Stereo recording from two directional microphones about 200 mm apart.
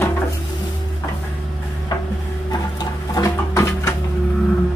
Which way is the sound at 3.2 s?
15° left (ahead or behind).